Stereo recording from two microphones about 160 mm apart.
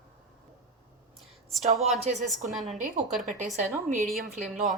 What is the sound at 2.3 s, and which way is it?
Speech, centre (ahead or behind).